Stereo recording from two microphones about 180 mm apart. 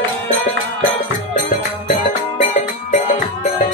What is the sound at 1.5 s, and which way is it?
Music, 45° left (ahead or behind).